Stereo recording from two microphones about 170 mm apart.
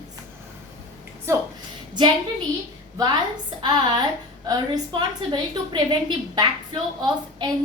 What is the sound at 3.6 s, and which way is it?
A woman's voice, 25° right (ahead or behind).